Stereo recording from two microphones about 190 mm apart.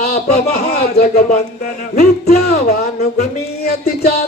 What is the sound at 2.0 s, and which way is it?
Music, 55° left (ahead or behind).